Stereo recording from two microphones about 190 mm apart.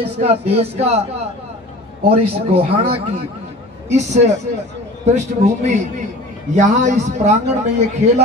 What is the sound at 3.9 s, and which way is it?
A man's voice, 35° right (ahead or behind).